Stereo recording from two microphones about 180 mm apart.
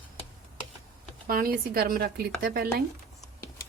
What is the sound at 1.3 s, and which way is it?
A woman's voice, 55° right (ahead or behind).